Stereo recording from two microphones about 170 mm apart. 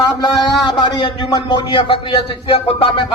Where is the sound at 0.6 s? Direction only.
25° left (ahead or behind).